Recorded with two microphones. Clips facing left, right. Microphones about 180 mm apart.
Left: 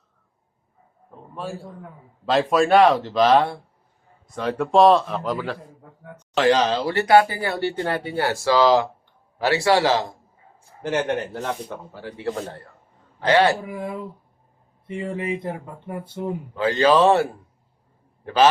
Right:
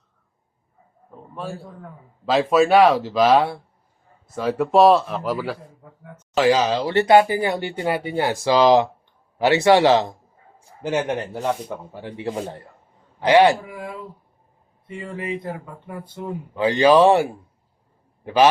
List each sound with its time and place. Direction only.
1.4 s speech: centre (ahead or behind)
6.8 s a man's voice: 20° right (ahead or behind)
13.7 s speech: 20° left (ahead or behind)
16.6 s speech: 15° right (ahead or behind)